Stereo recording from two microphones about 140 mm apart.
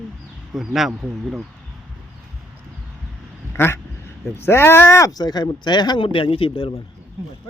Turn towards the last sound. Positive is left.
turn(degrees=40)  # may be behind; listen again after turning